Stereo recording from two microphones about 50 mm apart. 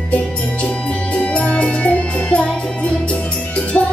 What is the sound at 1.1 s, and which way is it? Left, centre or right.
Music, left.